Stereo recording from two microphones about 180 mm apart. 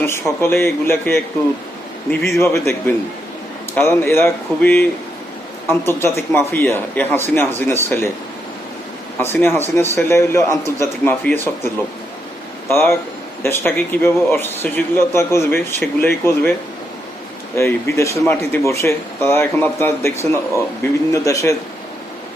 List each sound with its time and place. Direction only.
0.0 s a man's voice: 15° left (ahead or behind)
9.1 s a man's voice: 10° left (ahead or behind)
17.6 s a man's voice: 15° left (ahead or behind)